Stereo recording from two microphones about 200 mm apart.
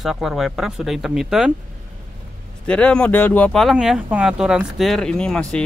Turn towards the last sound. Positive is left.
turn(degrees=5)  # may be behind; listen again after turning